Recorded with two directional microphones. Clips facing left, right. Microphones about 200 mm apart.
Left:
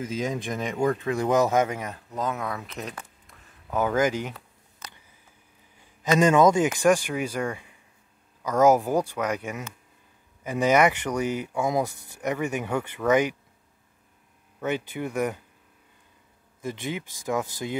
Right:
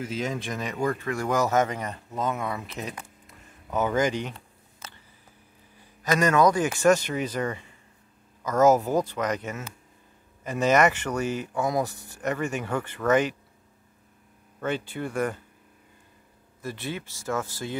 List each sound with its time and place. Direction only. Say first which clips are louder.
0.2 s speech: left 2 dB; 15° left (ahead or behind)
5.8 s a man's voice: left 3 dB; 15° left (ahead or behind)
14.6 s speech: left 1 dB; 15° left (ahead or behind)
16.6 s speech: left 2 dB; 15° left (ahead or behind)